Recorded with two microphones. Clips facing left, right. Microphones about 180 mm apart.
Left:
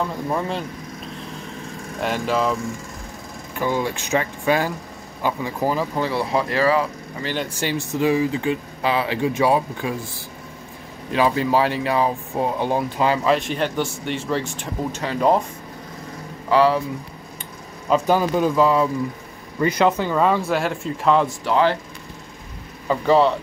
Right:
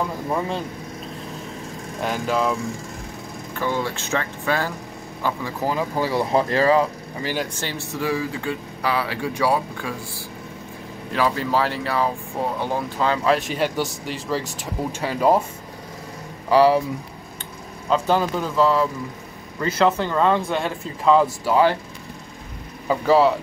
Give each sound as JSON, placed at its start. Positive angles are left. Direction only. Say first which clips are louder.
{"t": 0.3, "sound": "speech", "louder": "right 1 dB", "side_deg": 0}
{"t": 2.0, "sound": "speech", "louder": "left 1 dB", "side_deg": 0}
{"t": 3.5, "sound": "speech", "louder": "left 2 dB", "side_deg": 15}
{"t": 5.8, "sound": "speech", "louder": "even", "side_deg": -10}
{"t": 6.3, "sound": "speech", "louder": "right 2 dB", "side_deg": -30}
{"t": 7.2, "sound": "speech", "louder": "even", "side_deg": -10}
{"t": 7.5, "sound": "speech", "louder": "left 5 dB", "side_deg": 15}
{"t": 11.1, "sound": "speech", "louder": "left 3 dB", "side_deg": 20}
{"t": 13.2, "sound": "speech", "louder": "even", "side_deg": 0}
{"t": 14.4, "sound": "speech", "louder": "left 2 dB", "side_deg": -40}
{"t": 14.9, "sound": "speech", "louder": "even", "side_deg": -10}
{"t": 16.4, "sound": "speech", "louder": "right 2 dB", "side_deg": -15}
{"t": 17.8, "sound": "speech", "louder": "left 2 dB", "side_deg": 10}
{"t": 22.8, "sound": "speech", "louder": "even", "side_deg": -5}